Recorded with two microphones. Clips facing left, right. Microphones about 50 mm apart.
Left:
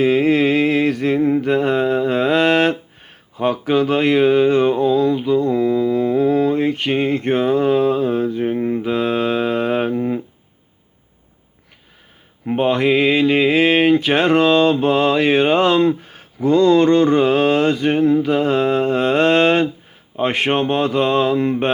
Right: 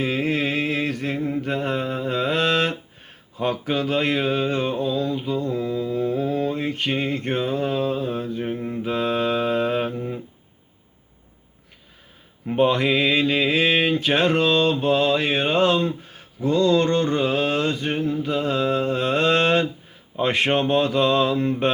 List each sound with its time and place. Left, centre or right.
0.0 s mantra: left
3.7 s a sound: left
5.3 s mantra: left
8.4 s mantra: left
8.8 s mantra: left
12.5 s mantra: left
16.5 s mantra: left
20.1 s speech: left